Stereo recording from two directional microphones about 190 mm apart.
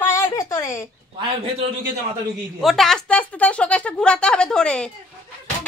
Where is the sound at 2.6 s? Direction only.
Centre (ahead or behind).